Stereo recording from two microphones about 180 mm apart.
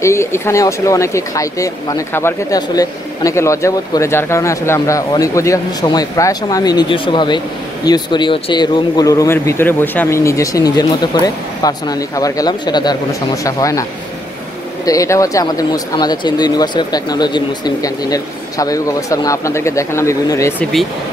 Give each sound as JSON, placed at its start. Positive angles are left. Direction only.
{"t": 0.0, "sound": "speech", "side_deg": 15}
{"t": 14.9, "sound": "speech", "side_deg": 20}